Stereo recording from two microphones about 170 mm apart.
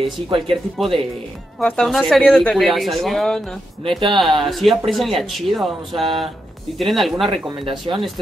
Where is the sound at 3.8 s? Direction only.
25° right (ahead or behind).